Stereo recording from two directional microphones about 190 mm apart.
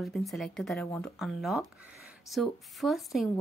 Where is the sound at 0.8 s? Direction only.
15° left (ahead or behind).